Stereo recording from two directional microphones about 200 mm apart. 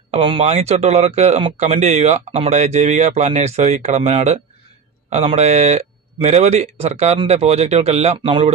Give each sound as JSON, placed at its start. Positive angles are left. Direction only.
{"t": 0.1, "sound": "speech", "side_deg": -25}